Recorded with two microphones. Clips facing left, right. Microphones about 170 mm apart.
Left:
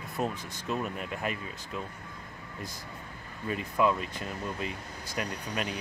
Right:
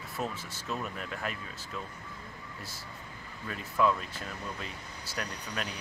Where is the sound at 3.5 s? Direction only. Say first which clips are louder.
Left 1 dB; 10° left (ahead or behind).